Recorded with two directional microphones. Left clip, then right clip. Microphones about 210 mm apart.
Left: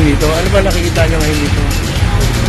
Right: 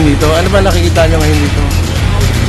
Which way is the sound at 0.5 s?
15° right (ahead or behind).